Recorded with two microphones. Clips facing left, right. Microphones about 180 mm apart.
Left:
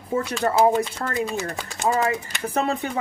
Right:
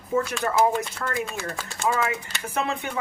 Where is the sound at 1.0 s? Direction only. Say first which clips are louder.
Left 3 dB; 30° left (ahead or behind).